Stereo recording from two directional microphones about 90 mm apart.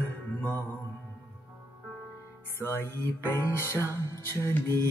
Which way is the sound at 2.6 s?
25° left (ahead or behind).